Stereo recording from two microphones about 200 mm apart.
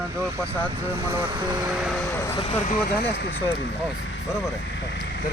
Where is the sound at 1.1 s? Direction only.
20° right (ahead or behind).